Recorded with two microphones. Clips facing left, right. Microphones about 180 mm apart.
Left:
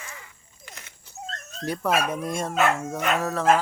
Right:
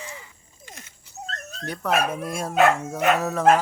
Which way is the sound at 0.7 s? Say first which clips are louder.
Right 2 dB; 70° left (ahead or behind).